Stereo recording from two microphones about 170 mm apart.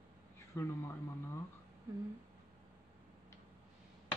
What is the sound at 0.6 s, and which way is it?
Speech, 15° left (ahead or behind).